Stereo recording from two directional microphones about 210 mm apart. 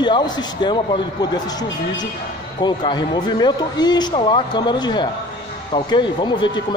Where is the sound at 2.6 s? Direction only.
20° left (ahead or behind).